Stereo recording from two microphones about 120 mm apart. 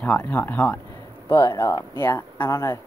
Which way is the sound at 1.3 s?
35° left (ahead or behind).